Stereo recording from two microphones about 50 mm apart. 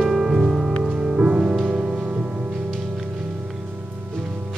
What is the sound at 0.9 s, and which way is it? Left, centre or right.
Music, right.